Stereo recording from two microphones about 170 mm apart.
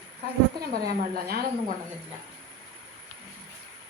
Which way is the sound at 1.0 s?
65° right (ahead or behind).